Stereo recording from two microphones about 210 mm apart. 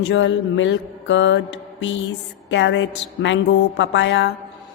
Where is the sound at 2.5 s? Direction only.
60° left (ahead or behind).